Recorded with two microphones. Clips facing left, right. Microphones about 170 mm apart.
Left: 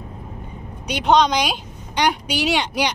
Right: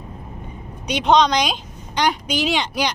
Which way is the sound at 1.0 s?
5° left (ahead or behind).